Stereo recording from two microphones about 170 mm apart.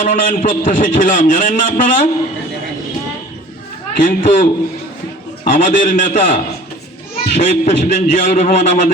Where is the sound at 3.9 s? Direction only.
50° left (ahead or behind).